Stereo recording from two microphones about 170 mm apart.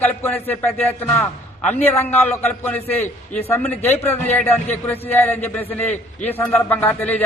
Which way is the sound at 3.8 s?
10° left (ahead or behind).